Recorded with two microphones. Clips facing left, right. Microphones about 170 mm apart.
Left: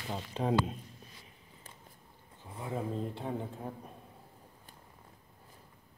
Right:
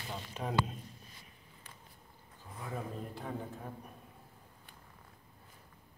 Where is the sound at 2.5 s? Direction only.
25° left (ahead or behind).